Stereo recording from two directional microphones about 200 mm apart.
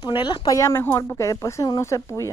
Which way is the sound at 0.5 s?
15° left (ahead or behind).